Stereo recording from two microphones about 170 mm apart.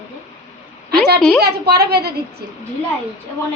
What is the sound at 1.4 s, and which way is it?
Speech, 70° right (ahead or behind).